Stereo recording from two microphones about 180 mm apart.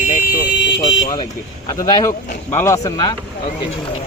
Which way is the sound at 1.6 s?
20° left (ahead or behind).